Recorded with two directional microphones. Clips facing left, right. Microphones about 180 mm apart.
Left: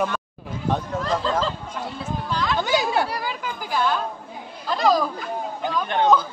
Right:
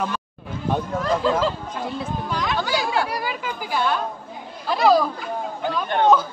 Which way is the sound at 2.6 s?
20° left (ahead or behind).